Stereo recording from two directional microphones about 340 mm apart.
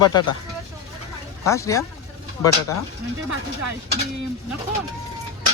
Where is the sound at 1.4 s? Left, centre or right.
Centre.